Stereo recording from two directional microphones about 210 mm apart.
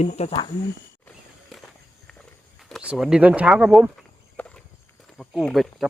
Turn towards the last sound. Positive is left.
turn(degrees=0)  # may be behind; listen again after turning